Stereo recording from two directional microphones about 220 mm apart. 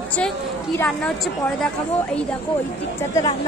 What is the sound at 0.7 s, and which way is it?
Speech, 5° left (ahead or behind).